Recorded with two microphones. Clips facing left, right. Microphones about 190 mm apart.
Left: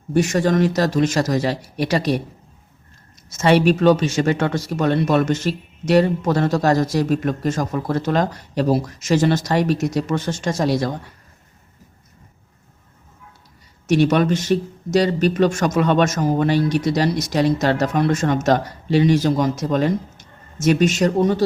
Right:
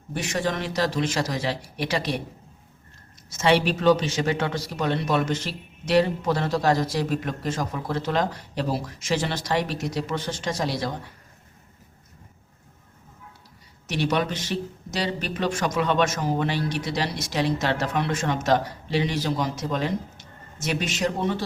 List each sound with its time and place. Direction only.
0.1 s speech: 45° left (ahead or behind)
3.3 s speech: 45° left (ahead or behind)
13.8 s speech: 45° left (ahead or behind)